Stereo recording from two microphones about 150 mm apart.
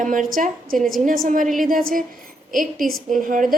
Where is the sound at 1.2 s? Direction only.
60° right (ahead or behind).